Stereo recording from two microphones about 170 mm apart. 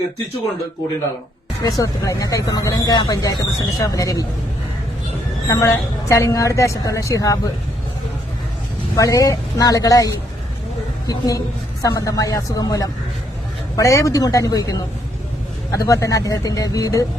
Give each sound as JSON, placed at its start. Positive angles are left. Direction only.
{"t": 1.8, "sound": "speech", "side_deg": 20}
{"t": 5.5, "sound": "speech", "side_deg": 20}
{"t": 9.0, "sound": "speech", "side_deg": 20}